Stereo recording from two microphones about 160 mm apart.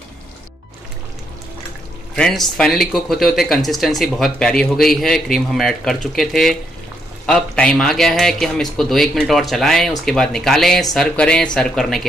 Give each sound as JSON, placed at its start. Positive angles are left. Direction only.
{"t": 2.1, "sound": "speech", "side_deg": 5}